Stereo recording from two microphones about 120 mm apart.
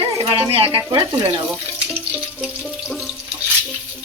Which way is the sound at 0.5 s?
50° right (ahead or behind).